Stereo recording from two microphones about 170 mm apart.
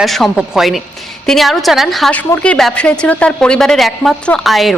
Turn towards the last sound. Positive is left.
turn(degrees=0)  # may be behind; listen again after turning